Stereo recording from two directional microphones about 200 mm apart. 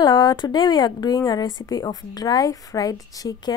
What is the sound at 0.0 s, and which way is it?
A woman's voice, 20° left (ahead or behind).